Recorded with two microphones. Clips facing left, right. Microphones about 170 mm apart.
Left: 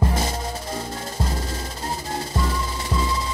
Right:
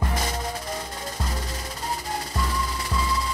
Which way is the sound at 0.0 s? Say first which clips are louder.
Left 4 dB; 30° left (ahead or behind).